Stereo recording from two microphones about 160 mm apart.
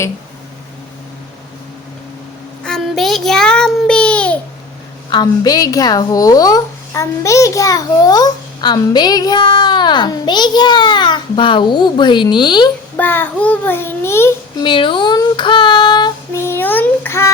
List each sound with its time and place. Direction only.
2.6 s child singing: 5° left (ahead or behind)
5.1 s a woman's voice: 25° left (ahead or behind)
13.0 s child singing: 10° left (ahead or behind)
14.6 s speech: 30° left (ahead or behind)
16.3 s a sound: 15° left (ahead or behind)